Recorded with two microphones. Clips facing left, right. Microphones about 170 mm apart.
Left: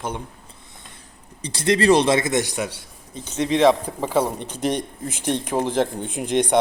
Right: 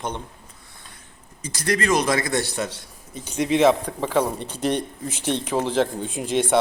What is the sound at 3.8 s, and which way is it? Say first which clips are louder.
Speech: left 1 dB; 10° left (ahead or behind).